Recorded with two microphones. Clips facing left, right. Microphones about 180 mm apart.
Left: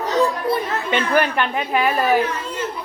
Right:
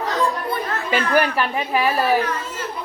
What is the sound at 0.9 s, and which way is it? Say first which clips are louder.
A woman's voice: even; 10° right (ahead or behind).